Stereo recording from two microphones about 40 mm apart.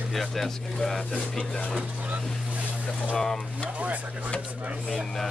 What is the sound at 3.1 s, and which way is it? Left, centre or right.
Speech, centre.